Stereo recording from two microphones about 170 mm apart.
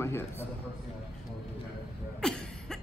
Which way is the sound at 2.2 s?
5° left (ahead or behind).